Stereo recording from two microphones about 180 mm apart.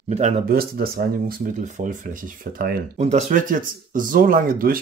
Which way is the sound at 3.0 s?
40° right (ahead or behind).